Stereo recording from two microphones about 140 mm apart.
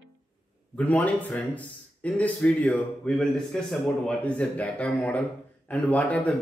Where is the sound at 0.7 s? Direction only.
10° left (ahead or behind).